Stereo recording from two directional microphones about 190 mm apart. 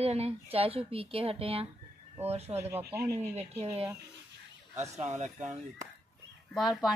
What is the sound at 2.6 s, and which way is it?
Speech, 15° right (ahead or behind).